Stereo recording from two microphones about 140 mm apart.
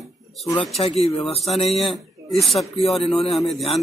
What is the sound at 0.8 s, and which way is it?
Speech, 45° left (ahead or behind).